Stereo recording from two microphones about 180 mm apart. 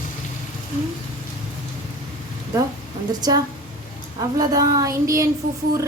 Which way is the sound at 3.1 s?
20° right (ahead or behind).